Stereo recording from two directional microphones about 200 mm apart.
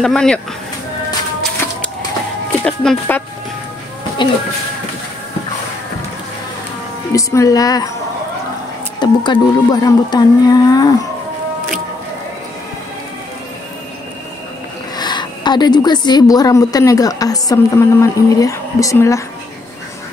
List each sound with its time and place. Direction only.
0.0 s speech: 5° left (ahead or behind)
2.6 s speech: 5° left (ahead or behind)
4.2 s speech: 25° left (ahead or behind)
7.1 s a woman's voice: 15° left (ahead or behind)
9.0 s speech: 20° left (ahead or behind)
15.0 s a woman's voice: 20° left (ahead or behind)